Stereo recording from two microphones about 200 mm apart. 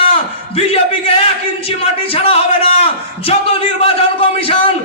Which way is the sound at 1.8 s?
30° left (ahead or behind).